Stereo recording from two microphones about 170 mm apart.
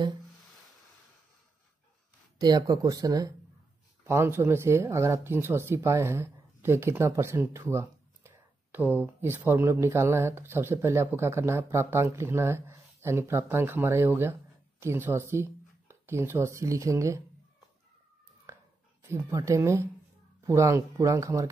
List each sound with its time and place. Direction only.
2.3 s speech: 25° right (ahead or behind)
19.0 s speech: 15° right (ahead or behind)